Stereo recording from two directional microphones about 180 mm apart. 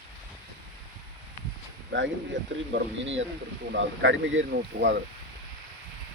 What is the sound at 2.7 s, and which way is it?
Speech, 90° right.